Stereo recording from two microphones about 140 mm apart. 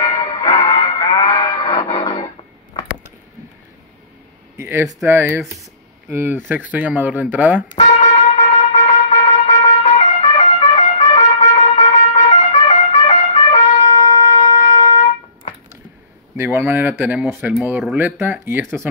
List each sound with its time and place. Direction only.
0.0 s music: 30° left (ahead or behind)
4.6 s speech: 20° right (ahead or behind)
7.7 s trumpet: 50° left (ahead or behind)
13.9 s wind instrument: 25° left (ahead or behind)
14.5 s trumpet: 55° left (ahead or behind)
14.9 s a sound: 55° left (ahead or behind)
16.3 s speech: 15° right (ahead or behind)